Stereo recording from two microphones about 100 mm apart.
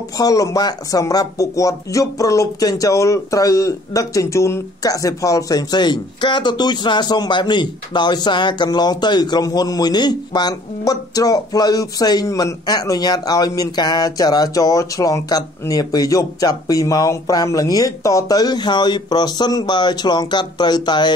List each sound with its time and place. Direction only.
0.2 s speech: 35° left (ahead or behind)